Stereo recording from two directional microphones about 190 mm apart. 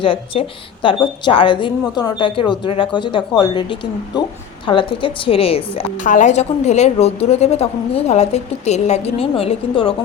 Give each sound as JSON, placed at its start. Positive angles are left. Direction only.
{"t": 0.0, "sound": "a woman's voice", "side_deg": 25}
{"t": 6.0, "sound": "a woman's voice", "side_deg": 40}